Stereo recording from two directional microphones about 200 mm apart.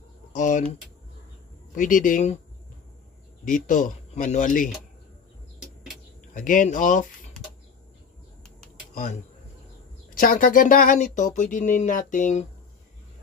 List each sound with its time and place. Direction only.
0.3 s speech: 40° left (ahead or behind)
1.8 s speech: 40° left (ahead or behind)
3.4 s speech: 40° left (ahead or behind)
6.3 s speech: 40° left (ahead or behind)
8.9 s speech: 40° left (ahead or behind)